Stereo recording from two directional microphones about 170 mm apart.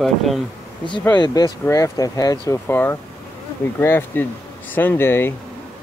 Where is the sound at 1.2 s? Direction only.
25° left (ahead or behind).